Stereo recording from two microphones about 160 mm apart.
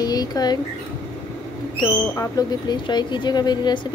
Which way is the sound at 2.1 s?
20° left (ahead or behind).